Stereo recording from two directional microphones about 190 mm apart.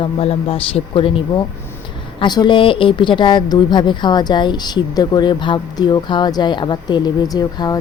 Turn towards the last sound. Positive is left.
turn(degrees=20)  # may be behind; listen again after turning